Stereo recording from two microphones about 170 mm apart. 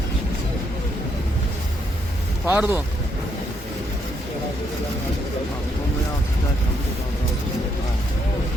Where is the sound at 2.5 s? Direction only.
10° right (ahead or behind).